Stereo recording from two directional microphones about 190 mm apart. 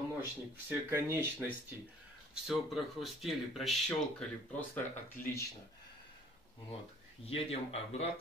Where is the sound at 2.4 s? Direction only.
Centre (ahead or behind).